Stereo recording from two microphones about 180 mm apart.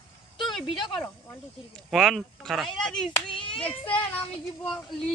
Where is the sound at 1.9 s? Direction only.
Centre (ahead or behind).